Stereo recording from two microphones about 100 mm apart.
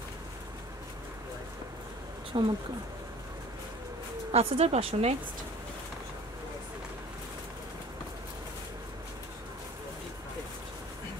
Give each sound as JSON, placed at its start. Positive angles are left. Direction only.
{"t": 2.3, "sound": "speech", "side_deg": -50}
{"t": 4.3, "sound": "a woman's voice", "side_deg": -90}